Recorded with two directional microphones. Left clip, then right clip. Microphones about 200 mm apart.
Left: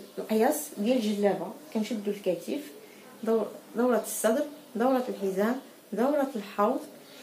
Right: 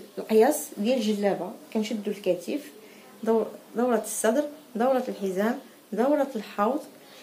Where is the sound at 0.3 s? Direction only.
45° right (ahead or behind).